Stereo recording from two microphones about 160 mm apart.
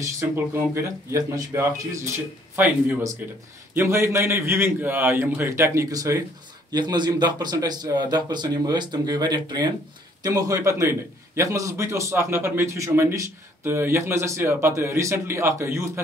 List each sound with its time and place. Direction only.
0.7 s a man's voice: 20° right (ahead or behind)